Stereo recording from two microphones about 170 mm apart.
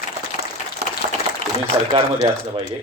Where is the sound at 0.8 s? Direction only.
75° right (ahead or behind).